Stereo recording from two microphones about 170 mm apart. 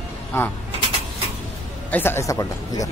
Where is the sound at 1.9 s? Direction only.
15° left (ahead or behind).